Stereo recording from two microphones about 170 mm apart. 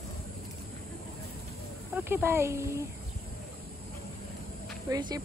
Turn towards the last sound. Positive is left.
turn(degrees=-25)  # may be behind; listen again after turning